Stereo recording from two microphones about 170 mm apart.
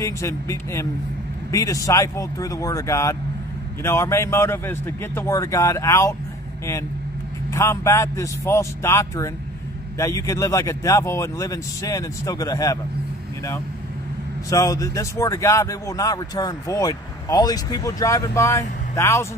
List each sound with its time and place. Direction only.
0.0 s a man's voice: 15° left (ahead or behind)
7.5 s a man's voice: 15° left (ahead or behind)
14.5 s speech: 20° left (ahead or behind)